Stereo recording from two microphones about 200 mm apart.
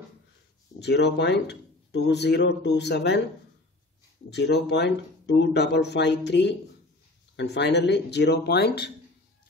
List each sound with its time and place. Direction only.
0.7 s speech: 60° left (ahead or behind)
4.3 s speech: 55° left (ahead or behind)